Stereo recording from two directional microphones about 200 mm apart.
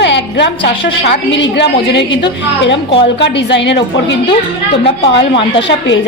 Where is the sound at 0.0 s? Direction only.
60° left (ahead or behind).